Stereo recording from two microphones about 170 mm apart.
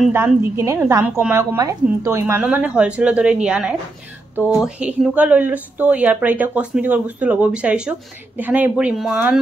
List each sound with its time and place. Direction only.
0.1 s speech: 15° right (ahead or behind)